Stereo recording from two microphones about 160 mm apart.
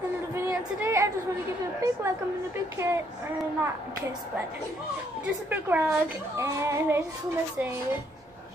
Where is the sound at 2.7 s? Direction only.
15° right (ahead or behind).